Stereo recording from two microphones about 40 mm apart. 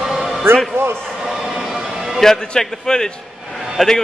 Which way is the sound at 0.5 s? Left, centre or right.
Right.